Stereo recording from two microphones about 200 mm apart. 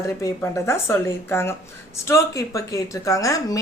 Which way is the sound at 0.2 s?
15° left (ahead or behind).